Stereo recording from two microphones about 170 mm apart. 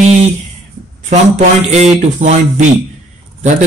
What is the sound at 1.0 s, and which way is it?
Speech, 40° right (ahead or behind).